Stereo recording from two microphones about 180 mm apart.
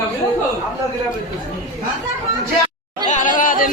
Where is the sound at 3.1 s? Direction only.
45° left (ahead or behind).